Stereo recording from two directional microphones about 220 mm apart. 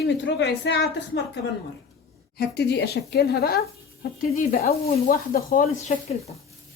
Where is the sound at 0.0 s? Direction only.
50° left (ahead or behind).